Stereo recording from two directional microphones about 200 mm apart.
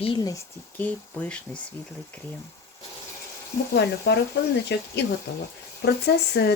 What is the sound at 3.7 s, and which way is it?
Speech, 60° left (ahead or behind).